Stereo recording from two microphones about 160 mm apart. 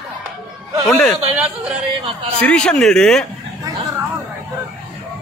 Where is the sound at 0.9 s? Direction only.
5° left (ahead or behind).